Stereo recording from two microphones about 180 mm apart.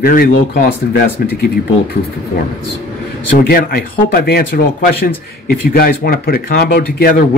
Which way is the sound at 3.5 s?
55° left (ahead or behind).